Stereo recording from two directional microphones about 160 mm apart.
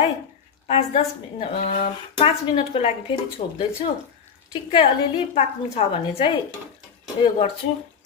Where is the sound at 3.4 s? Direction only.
50° left (ahead or behind).